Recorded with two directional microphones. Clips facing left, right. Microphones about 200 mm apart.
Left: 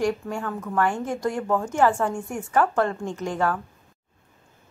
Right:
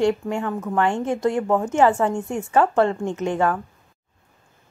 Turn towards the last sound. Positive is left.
turn(degrees=-20)  # may be behind; listen again after turning